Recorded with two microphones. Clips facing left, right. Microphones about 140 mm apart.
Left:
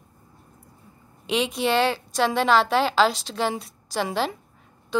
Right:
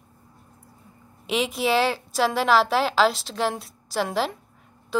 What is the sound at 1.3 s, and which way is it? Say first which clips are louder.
A woman's voice: even; centre (ahead or behind).